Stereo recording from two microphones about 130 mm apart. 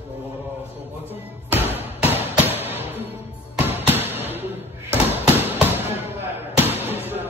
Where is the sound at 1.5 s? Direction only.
15° right (ahead or behind).